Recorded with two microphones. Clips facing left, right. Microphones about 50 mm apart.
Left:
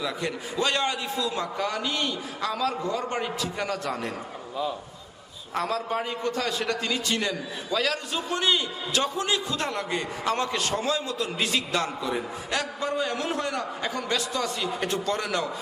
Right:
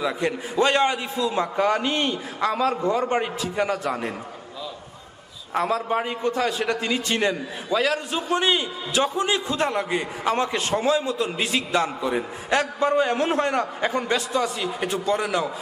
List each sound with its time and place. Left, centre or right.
0.0 s a man's voice: right
5.5 s a man's voice: right
14.7 s a man's voice: centre